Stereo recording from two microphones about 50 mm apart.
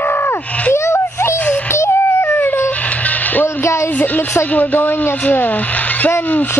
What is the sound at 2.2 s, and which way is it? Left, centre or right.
Dog, left.